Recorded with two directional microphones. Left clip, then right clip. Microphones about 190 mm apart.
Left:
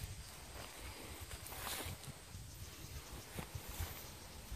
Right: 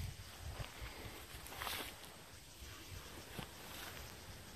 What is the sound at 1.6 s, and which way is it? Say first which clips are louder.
Boat: right 2 dB; 10° left (ahead or behind).